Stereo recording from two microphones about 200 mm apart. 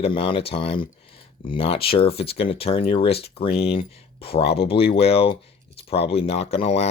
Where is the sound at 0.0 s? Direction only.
25° left (ahead or behind).